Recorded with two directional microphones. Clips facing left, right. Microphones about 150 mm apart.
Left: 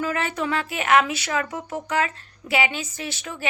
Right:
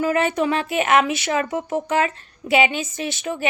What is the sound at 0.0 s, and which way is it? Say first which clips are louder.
Speech: right 6 dB; 20° right (ahead or behind).